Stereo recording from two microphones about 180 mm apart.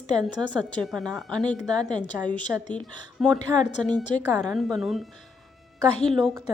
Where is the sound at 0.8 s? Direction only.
Centre (ahead or behind).